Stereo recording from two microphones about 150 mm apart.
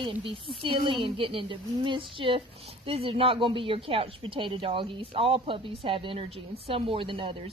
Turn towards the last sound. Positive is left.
turn(degrees=-35)  # may be behind; listen again after turning